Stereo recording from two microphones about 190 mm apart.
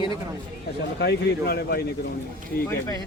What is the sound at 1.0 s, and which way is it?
Speech, 55° left (ahead or behind).